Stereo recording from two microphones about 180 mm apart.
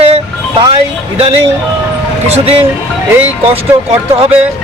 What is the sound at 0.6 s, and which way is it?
Speech, 30° right (ahead or behind).